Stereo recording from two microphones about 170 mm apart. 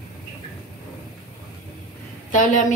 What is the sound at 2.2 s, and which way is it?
Speech, 50° left (ahead or behind).